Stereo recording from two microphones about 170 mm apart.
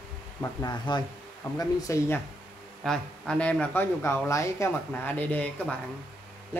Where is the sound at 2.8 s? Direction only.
5° left (ahead or behind).